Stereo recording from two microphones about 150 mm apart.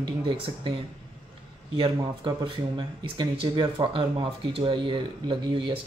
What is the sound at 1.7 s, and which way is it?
Speech, 30° right (ahead or behind).